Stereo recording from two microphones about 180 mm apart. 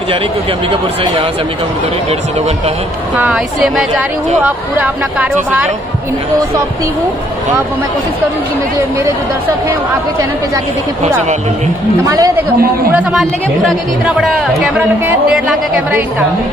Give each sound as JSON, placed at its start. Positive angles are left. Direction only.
{"t": 3.2, "sound": "speech", "side_deg": -5}
{"t": 12.1, "sound": "speech", "side_deg": -20}
{"t": 12.9, "sound": "speech", "side_deg": 0}